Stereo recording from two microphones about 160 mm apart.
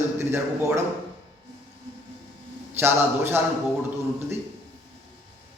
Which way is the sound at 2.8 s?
15° right (ahead or behind).